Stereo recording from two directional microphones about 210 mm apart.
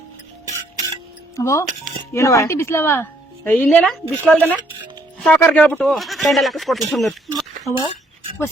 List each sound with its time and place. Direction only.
1.4 s a woman's voice: 15° left (ahead or behind)
6.9 s a sound: centre (ahead or behind)
7.7 s speech: 20° left (ahead or behind)